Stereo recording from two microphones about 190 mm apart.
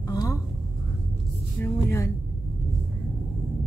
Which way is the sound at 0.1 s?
20° left (ahead or behind).